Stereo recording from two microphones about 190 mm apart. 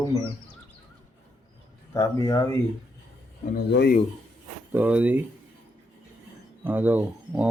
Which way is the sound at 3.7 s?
55° left (ahead or behind).